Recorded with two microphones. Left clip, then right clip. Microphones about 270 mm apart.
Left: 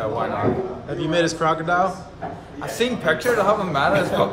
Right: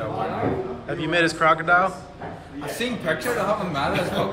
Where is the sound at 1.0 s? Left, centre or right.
Centre.